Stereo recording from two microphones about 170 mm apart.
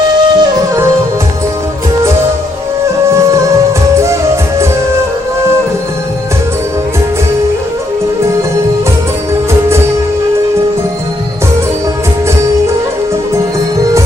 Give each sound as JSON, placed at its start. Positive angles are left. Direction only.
{"t": 0.0, "sound": "music", "side_deg": -25}
{"t": 3.1, "sound": "music", "side_deg": -15}